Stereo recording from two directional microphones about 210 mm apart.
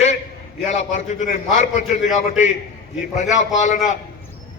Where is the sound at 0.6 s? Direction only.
35° left (ahead or behind).